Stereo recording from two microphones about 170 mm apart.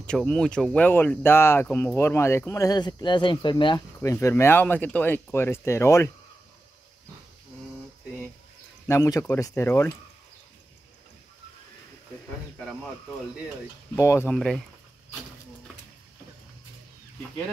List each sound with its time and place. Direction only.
0.0 s speech: 5° left (ahead or behind)
8.8 s speech: 20° left (ahead or behind)
13.9 s speech: 15° left (ahead or behind)
14.3 s speech: 5° left (ahead or behind)